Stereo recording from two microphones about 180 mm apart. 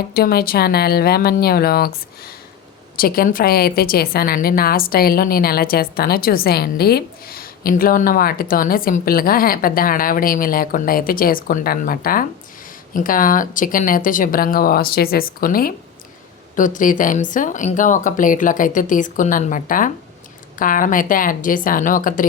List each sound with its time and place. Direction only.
0.1 s a woman's voice: 60° left (ahead or behind)